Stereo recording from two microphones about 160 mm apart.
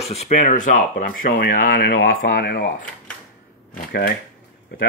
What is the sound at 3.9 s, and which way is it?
Speech, 85° left.